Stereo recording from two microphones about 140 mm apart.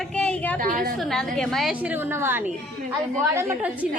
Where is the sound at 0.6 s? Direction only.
80° right.